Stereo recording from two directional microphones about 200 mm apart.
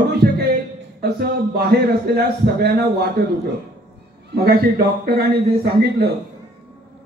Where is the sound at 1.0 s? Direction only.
50° right (ahead or behind).